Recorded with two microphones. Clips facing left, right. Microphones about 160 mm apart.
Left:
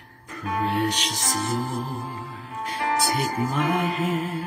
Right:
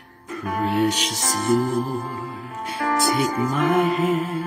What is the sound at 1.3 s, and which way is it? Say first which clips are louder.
Music: right 8 dB; 45° right (ahead or behind).